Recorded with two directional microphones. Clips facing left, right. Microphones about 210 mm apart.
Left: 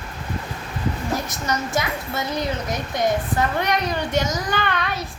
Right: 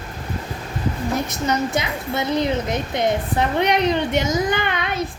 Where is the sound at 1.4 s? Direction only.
25° right (ahead or behind).